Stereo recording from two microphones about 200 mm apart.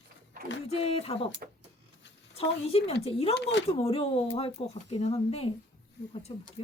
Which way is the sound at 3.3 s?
60° left (ahead or behind).